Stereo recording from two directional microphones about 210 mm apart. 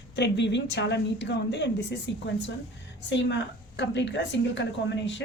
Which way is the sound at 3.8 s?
55° left (ahead or behind).